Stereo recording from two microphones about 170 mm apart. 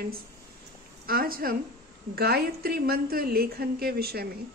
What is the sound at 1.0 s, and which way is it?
A woman's voice, 60° right (ahead or behind).